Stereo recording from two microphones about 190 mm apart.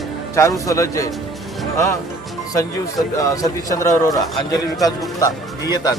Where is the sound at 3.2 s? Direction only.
15° left (ahead or behind).